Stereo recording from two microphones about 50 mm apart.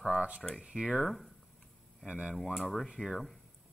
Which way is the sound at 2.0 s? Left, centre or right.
Centre.